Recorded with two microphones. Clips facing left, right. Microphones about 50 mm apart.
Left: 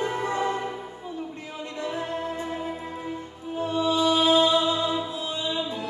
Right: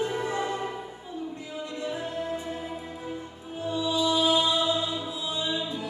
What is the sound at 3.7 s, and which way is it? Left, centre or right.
Music, left.